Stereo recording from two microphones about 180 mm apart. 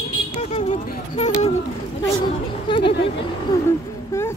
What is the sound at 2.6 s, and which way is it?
Speech, 30° left (ahead or behind).